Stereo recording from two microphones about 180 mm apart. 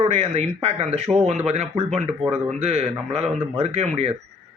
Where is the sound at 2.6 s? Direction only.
35° right (ahead or behind).